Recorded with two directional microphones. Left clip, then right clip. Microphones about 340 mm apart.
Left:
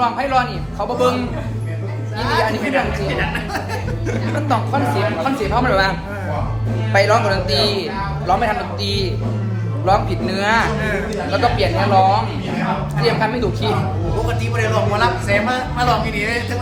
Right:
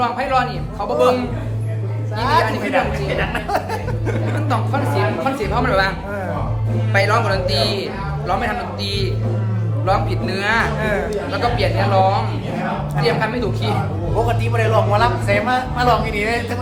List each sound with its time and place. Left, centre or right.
0.0 s speech: centre
3.1 s speech: centre
4.4 s speech: centre
6.9 s speech: centre
14.3 s speech: centre